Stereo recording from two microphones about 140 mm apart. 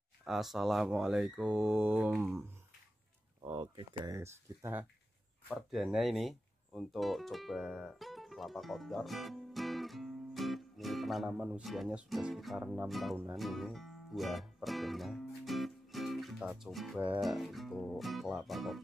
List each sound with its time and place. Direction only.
0.2 s speech: centre (ahead or behind)
3.7 s speech: 25° right (ahead or behind)
5.5 s speech: centre (ahead or behind)
13.4 s music: centre (ahead or behind)
17.2 s speech: centre (ahead or behind)